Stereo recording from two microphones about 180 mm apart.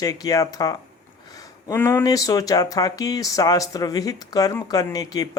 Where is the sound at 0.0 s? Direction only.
20° left (ahead or behind).